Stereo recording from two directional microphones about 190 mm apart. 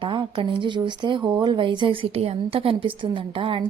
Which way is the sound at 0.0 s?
25° right (ahead or behind).